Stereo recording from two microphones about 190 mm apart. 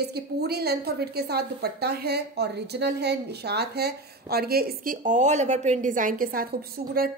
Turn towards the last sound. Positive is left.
turn(degrees=-55)  # may be behind; listen again after turning